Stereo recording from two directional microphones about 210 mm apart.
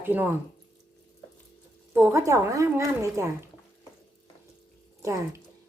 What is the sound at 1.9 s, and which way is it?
A woman's voice, 10° right (ahead or behind).